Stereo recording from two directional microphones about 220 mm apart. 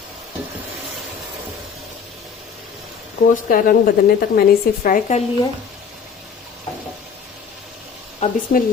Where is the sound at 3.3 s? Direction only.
40° left (ahead or behind).